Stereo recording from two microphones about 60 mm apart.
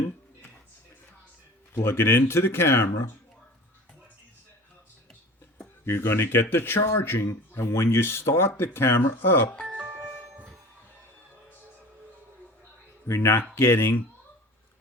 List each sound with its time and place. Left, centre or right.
1.7 s speech: left
5.8 s speech: left
9.7 s music: centre
13.1 s speech: left